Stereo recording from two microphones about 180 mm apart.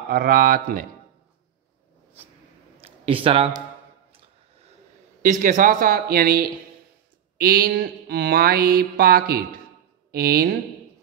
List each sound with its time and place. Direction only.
0.1 s speech: 50° right (ahead or behind)
2.8 s speech: 30° right (ahead or behind)
5.2 s speech: 45° right (ahead or behind)
7.3 s mantra: 55° right (ahead or behind)